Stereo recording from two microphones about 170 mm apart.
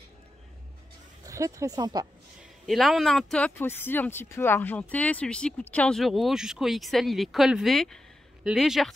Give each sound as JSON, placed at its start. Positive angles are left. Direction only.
{"t": 1.2, "sound": "speech", "side_deg": -20}
{"t": 2.6, "sound": "speech", "side_deg": 0}